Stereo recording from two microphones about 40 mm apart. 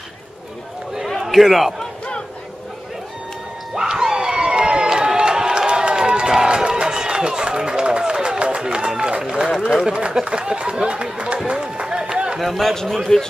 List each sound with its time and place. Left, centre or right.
1.2 s a man's voice: centre
3.7 s crowd: centre
6.3 s run: centre
9.2 s a man's voice: centre
11.5 s run: right
12.4 s a man's voice: centre
13.1 s a man's voice: centre